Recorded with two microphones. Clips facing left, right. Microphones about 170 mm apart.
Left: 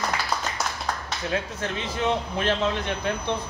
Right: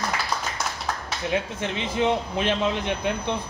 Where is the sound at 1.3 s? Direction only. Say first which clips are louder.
Right 2 dB; 20° right (ahead or behind).